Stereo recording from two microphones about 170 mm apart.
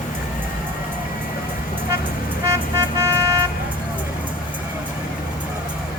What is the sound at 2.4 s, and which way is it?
Vehicle, 15° right (ahead or behind).